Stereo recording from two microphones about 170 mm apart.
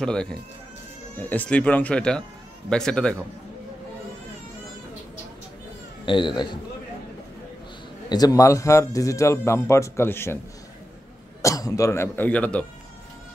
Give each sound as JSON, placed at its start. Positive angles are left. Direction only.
{"t": 0.0, "sound": "a man's voice", "side_deg": 5}
{"t": 6.0, "sound": "a man's voice", "side_deg": 30}
{"t": 8.1, "sound": "speech", "side_deg": 20}
{"t": 11.4, "sound": "speech", "side_deg": 20}